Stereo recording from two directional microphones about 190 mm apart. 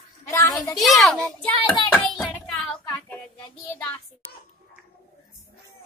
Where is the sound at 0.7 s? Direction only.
Centre (ahead or behind).